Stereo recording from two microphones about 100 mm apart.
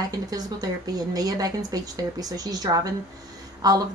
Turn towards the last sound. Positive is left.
turn(degrees=-40)  # may be behind; listen again after turning